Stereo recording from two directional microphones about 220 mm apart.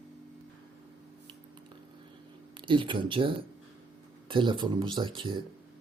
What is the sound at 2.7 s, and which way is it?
Speech, 20° right (ahead or behind).